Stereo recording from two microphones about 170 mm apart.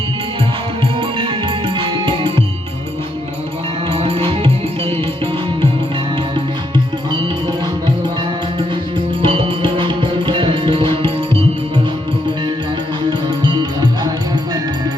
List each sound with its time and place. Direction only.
0.9 s music: 30° right (ahead or behind)
3.9 s music: 35° right (ahead or behind)
6.3 s music: 25° right (ahead or behind)
9.2 s music: 30° right (ahead or behind)
13.1 s music: 25° right (ahead or behind)